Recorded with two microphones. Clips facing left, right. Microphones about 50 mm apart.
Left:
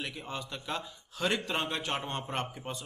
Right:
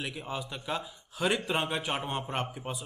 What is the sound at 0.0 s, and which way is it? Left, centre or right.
A man's voice, centre.